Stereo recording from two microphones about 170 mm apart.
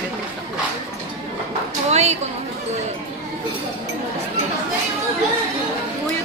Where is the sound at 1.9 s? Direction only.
40° right (ahead or behind).